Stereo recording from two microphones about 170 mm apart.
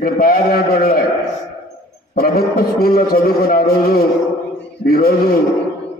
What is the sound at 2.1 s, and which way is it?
A man's voice, 60° left (ahead or behind).